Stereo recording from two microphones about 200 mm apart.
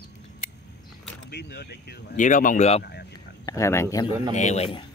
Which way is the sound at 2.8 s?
55° left (ahead or behind).